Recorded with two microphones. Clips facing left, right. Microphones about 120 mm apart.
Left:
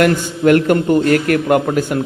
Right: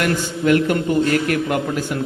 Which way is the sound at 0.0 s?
50° left (ahead or behind).